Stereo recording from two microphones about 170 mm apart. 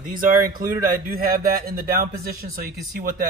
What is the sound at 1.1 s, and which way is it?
A man's voice, 60° right (ahead or behind).